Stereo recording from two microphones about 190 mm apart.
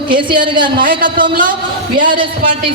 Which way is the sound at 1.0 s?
45° right (ahead or behind).